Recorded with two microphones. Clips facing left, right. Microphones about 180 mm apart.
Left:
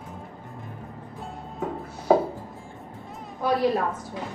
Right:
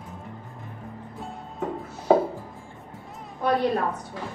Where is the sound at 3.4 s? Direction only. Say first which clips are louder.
Even; centre (ahead or behind).